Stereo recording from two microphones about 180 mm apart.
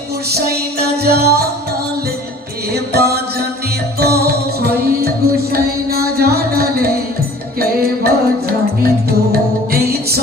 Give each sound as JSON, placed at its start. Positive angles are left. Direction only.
{"t": 0.3, "sound": "music", "side_deg": -60}
{"t": 2.7, "sound": "music", "side_deg": -60}